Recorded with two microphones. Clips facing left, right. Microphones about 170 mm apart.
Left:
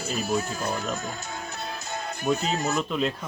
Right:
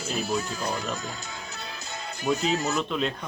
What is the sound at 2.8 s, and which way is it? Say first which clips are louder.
Speech: left 1 dB; 5° left (ahead or behind).